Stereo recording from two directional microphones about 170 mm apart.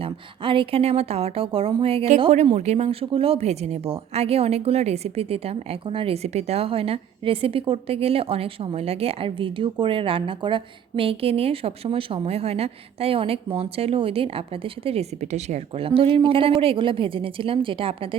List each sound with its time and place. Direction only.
0.0 s speech: 30° right (ahead or behind)